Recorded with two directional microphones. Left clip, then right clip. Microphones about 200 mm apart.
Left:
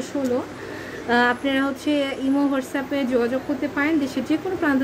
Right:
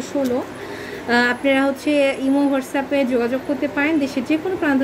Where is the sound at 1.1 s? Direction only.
20° right (ahead or behind).